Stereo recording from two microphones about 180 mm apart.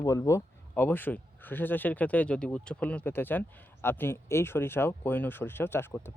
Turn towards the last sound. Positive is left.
turn(degrees=10)  # may be behind; listen again after turning